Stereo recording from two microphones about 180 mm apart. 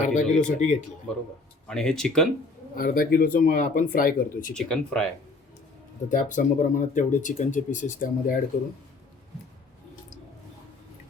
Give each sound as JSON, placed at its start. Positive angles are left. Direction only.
{"t": 0.1, "sound": "speech", "side_deg": 45}
{"t": 1.6, "sound": "speech", "side_deg": 5}
{"t": 2.7, "sound": "speech", "side_deg": 55}
{"t": 4.5, "sound": "speech", "side_deg": 5}
{"t": 6.1, "sound": "speech", "side_deg": 45}